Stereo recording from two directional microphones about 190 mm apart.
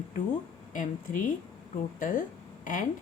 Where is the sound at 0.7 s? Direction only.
45° left (ahead or behind).